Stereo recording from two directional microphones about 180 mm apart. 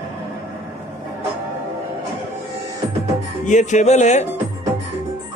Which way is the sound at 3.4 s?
40° left (ahead or behind).